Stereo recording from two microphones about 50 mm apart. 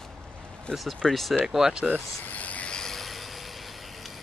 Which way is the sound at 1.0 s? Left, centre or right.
Centre.